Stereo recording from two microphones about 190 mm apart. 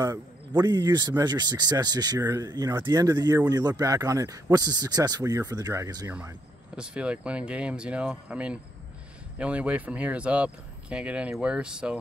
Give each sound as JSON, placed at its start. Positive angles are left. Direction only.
{"t": 0.0, "sound": "speech", "side_deg": -20}
{"t": 6.1, "sound": "speech", "side_deg": -5}